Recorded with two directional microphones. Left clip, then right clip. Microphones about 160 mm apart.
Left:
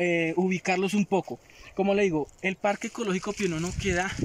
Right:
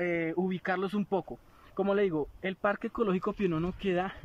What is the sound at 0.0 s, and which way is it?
Speech, 20° left (ahead or behind).